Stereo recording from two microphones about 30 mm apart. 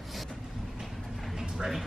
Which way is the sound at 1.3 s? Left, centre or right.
Centre.